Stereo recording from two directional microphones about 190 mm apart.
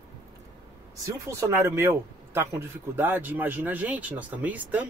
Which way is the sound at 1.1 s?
15° right (ahead or behind).